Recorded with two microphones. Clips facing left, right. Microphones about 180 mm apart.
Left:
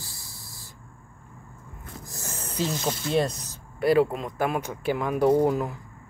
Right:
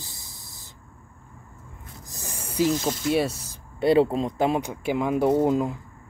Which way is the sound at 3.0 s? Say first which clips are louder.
Right 1 dB; 10° right (ahead or behind).